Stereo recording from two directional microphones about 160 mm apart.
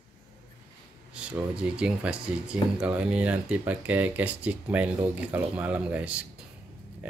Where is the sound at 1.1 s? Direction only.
5° right (ahead or behind).